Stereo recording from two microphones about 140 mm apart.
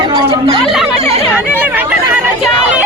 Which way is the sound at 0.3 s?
40° right (ahead or behind).